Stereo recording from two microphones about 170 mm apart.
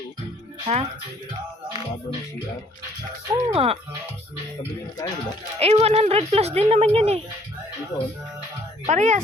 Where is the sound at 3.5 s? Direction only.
35° right (ahead or behind).